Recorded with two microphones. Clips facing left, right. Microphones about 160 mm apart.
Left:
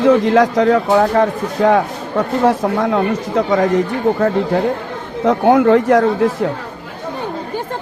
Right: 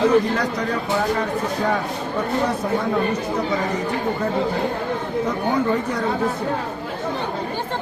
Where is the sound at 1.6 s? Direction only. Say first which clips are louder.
Left 8 dB; 90° left.